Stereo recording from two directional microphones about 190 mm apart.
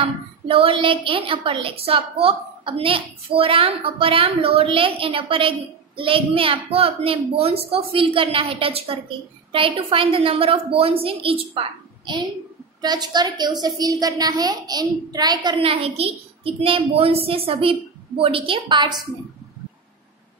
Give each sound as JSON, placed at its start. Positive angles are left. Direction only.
{"t": 0.0, "sound": "a woman's voice", "side_deg": -30}